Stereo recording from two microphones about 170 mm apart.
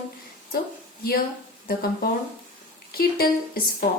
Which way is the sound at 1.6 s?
60° left (ahead or behind).